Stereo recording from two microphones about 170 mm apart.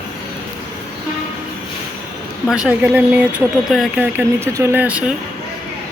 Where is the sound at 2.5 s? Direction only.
5° right (ahead or behind).